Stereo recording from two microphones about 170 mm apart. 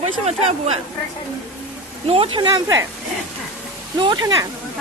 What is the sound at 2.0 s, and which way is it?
Speech, 35° right (ahead or behind).